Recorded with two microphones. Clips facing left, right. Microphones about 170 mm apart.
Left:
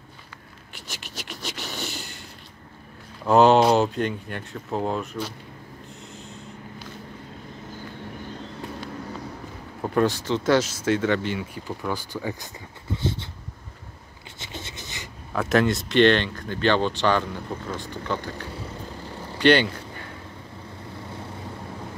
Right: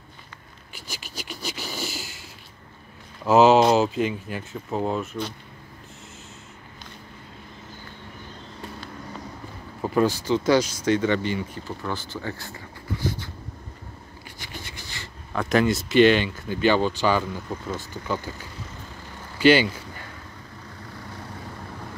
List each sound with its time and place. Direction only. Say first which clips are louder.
0.7 s a sound: right 1 dB; centre (ahead or behind)
3.3 s speech: even; 5° right (ahead or behind)
9.8 s speech: right 1 dB; centre (ahead or behind)
11.6 s speech: left 2 dB; 15° left (ahead or behind)
14.4 s a sound: left 3 dB; 25° left (ahead or behind)
15.3 s speech: even; centre (ahead or behind)